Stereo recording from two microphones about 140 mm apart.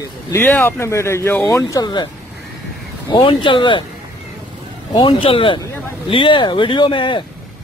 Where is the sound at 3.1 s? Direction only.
35° left (ahead or behind).